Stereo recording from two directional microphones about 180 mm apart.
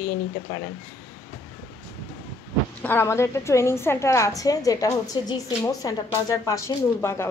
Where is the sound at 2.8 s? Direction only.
15° left (ahead or behind).